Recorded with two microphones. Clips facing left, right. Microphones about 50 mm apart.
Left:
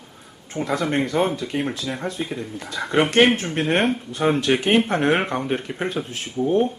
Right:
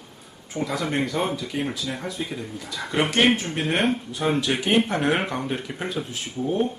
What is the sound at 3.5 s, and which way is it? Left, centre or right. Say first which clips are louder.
Speech: left 3 dB; centre.